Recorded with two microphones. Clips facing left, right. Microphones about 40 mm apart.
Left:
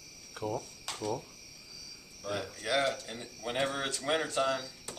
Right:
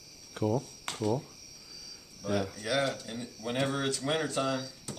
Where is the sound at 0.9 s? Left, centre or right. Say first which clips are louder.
Right 5 dB; centre.